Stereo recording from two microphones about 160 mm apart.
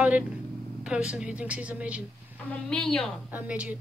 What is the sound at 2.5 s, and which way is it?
Speech, 5° left (ahead or behind).